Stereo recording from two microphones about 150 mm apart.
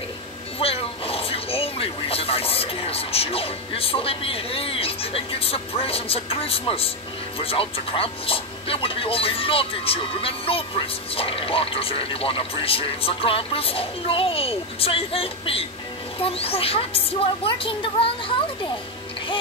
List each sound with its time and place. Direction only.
0.6 s a man's voice: 40° left (ahead or behind)